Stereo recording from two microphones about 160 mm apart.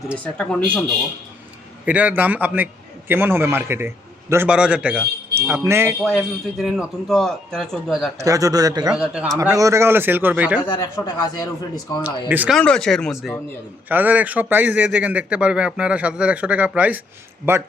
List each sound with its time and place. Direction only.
0.1 s speech: 5° left (ahead or behind)
1.8 s a man's voice: 10° right (ahead or behind)
6.6 s a man's voice: centre (ahead or behind)
8.2 s a man's voice: 20° right (ahead or behind)
8.9 s a man's voice: 5° right (ahead or behind)
9.4 s a man's voice: 20° right (ahead or behind)
10.6 s speech: 25° left (ahead or behind)
12.3 s a man's voice: 10° right (ahead or behind)
12.5 s a man's voice: 5° left (ahead or behind)
13.8 s a man's voice: 10° right (ahead or behind)